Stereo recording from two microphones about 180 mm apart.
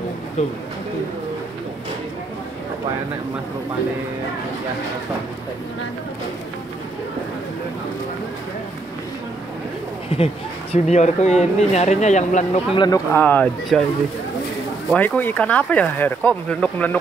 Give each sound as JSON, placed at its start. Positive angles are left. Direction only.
{"t": 0.4, "sound": "speech", "side_deg": 40}
{"t": 10.0, "sound": "speech", "side_deg": 35}
{"t": 12.7, "sound": "speech", "side_deg": 25}
{"t": 13.1, "sound": "speech", "side_deg": 10}
{"t": 14.9, "sound": "speech", "side_deg": 10}